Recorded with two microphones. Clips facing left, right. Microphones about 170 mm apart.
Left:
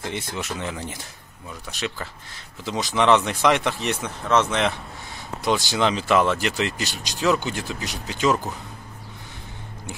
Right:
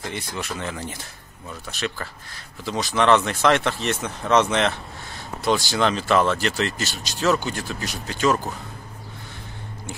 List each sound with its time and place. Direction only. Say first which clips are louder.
0.1 s speech: left 1 dB; 20° left (ahead or behind)
4.0 s speech: right 2 dB; centre (ahead or behind)
5.4 s speech: right 1 dB; 15° left (ahead or behind)